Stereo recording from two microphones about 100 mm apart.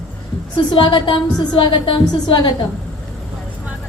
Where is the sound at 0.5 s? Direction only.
50° left (ahead or behind).